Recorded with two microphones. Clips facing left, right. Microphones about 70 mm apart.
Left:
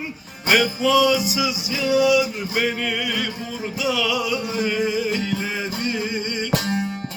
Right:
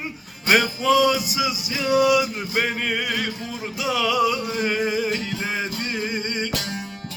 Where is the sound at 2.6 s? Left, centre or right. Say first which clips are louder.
Left 1 dB; centre.